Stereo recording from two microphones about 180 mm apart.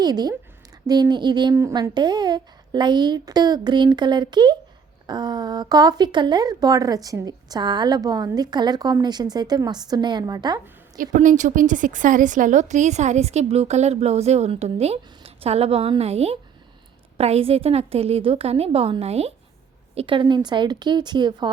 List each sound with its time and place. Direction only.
0.0 s speech: 20° right (ahead or behind)
10.9 s a woman's voice: 45° right (ahead or behind); by 21.5 s 25° right (ahead or behind)